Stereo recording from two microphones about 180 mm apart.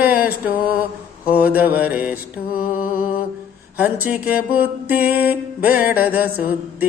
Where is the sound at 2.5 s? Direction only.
55° left (ahead or behind).